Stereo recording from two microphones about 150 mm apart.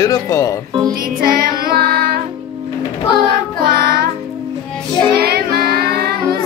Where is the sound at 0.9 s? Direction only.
75° right (ahead or behind); by 2.2 s 90° right.